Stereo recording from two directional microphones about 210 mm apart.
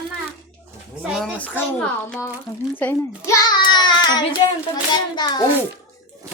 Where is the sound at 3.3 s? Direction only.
20° left (ahead or behind).